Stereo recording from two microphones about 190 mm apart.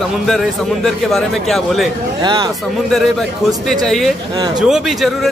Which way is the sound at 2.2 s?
20° right (ahead or behind).